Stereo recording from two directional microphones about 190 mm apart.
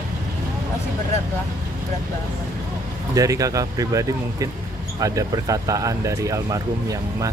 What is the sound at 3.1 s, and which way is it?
Speech, 15° right (ahead or behind).